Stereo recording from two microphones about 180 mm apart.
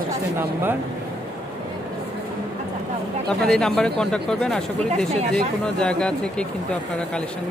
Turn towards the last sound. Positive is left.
turn(degrees=5)  # may be behind; listen again after turning